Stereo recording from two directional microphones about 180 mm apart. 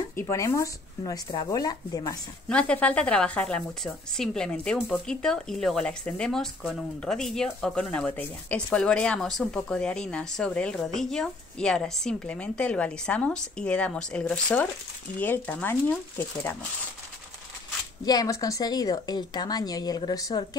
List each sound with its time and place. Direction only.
0.2 s a woman's voice: 15° left (ahead or behind)
2.5 s a woman's voice: 5° left (ahead or behind)
18.0 s a woman's voice: 20° left (ahead or behind)